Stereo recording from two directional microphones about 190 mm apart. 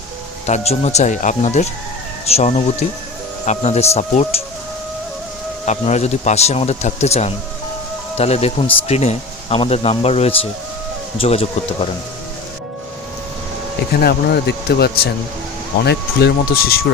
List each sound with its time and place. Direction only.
0.4 s speech: 35° left (ahead or behind)
5.6 s speech: 35° left (ahead or behind)
14.0 s speech: 60° left (ahead or behind)